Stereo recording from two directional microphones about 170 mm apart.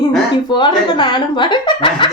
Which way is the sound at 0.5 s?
25° left (ahead or behind).